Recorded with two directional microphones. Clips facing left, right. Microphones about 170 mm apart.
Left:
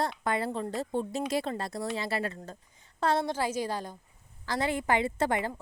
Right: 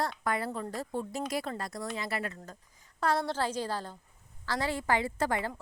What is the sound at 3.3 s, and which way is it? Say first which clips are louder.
Speech: left 2 dB; 10° left (ahead or behind).